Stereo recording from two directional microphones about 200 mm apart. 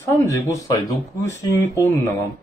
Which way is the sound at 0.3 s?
15° left (ahead or behind).